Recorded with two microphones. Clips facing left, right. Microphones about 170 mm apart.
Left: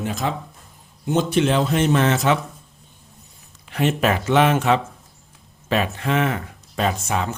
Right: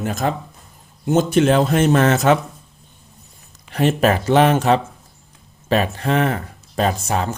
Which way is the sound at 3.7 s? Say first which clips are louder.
Right 3 dB; 40° right (ahead or behind).